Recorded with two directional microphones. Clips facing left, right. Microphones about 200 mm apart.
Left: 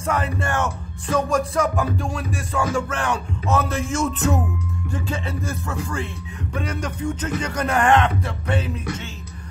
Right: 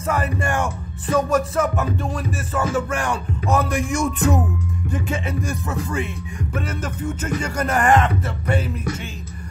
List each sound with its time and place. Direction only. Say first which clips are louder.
0.0 s speech: right 1 dB; 10° right (ahead or behind)
1.0 s music: right 2 dB; 5° right (ahead or behind)
2.7 s speech: right 1 dB; 10° right (ahead or behind)
4.9 s music: right 3 dB; 20° right (ahead or behind)
6.5 s speech: left 1 dB; 5° right (ahead or behind)